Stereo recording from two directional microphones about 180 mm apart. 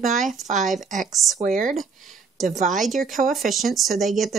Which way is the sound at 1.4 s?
45° right (ahead or behind).